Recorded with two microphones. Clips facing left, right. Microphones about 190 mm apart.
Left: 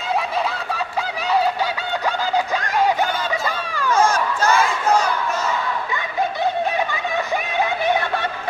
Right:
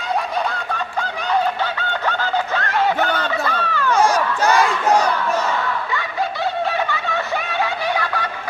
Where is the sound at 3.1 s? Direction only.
65° right (ahead or behind).